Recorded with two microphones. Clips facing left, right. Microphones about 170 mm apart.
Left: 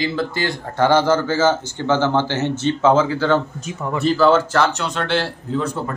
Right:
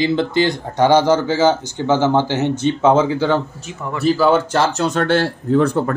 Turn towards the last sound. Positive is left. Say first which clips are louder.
# right 7 dB
turn(degrees=-60)  # may be behind; listen again after turning